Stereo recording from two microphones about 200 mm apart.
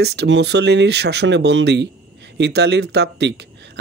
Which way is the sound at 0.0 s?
55° right (ahead or behind).